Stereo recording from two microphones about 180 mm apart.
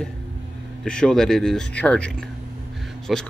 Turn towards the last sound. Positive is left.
turn(degrees=0)  # may be behind; listen again after turning